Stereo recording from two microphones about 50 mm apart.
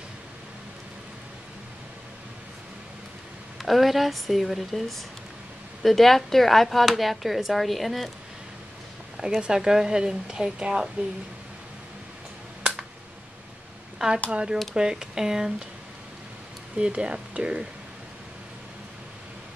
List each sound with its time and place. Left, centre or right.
3.6 s speech: centre
9.4 s a woman's voice: centre
13.9 s a woman's voice: centre
16.7 s a woman's voice: centre